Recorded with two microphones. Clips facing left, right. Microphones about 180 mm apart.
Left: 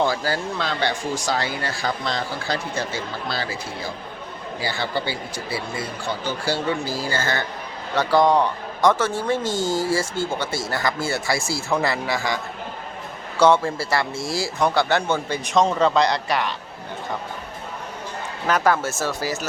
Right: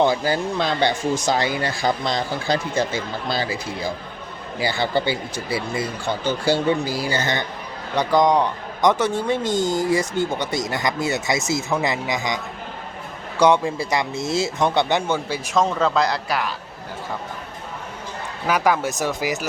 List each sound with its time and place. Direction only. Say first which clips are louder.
0.0 s speech: right 3 dB; 20° right (ahead or behind); by 16.5 s centre (ahead or behind)
18.4 s speech: even; 10° right (ahead or behind)